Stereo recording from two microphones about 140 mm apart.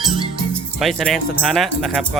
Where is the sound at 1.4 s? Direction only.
Centre (ahead or behind).